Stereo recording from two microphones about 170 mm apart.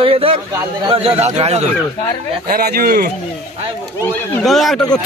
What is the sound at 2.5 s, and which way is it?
Speech, 65° right (ahead or behind).